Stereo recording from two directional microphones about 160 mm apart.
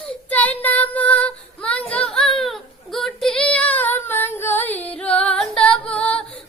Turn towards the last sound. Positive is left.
turn(degrees=5)  # may be behind; listen again after turning